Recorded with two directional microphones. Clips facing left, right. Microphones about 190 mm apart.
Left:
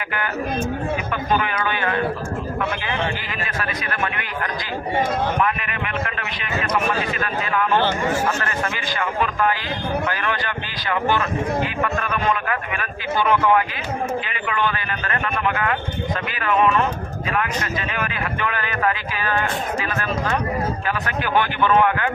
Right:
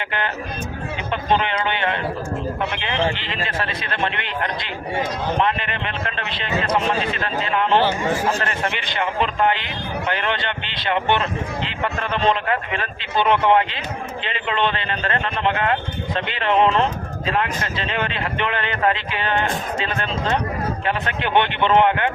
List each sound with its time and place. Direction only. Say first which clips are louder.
1.1 s a man's voice: right 4 dB; 25° right (ahead or behind)